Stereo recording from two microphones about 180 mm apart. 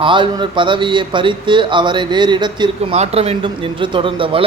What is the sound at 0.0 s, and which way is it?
Speech, 25° right (ahead or behind).